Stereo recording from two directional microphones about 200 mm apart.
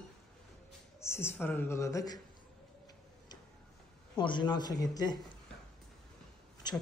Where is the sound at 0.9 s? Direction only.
15° left (ahead or behind).